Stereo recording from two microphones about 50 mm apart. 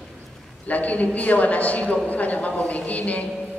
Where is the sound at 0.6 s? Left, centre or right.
Left.